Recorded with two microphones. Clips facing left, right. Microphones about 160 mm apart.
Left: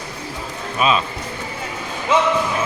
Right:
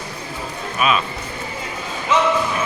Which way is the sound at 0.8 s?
25° left (ahead or behind).